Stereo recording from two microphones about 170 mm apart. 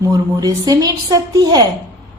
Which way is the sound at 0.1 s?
20° right (ahead or behind).